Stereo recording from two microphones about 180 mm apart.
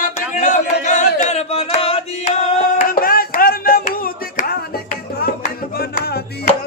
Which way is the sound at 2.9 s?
55° left (ahead or behind).